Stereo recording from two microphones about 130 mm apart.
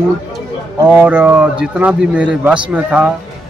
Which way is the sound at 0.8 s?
10° right (ahead or behind).